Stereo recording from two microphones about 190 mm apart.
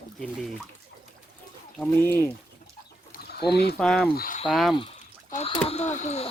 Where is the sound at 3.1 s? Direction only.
55° left (ahead or behind).